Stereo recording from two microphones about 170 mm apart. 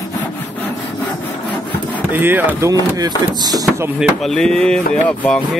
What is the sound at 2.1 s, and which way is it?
Speech, 10° right (ahead or behind).